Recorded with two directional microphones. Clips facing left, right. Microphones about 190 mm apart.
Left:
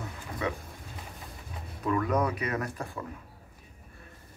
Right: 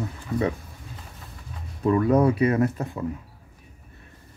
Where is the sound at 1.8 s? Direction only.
30° right (ahead or behind).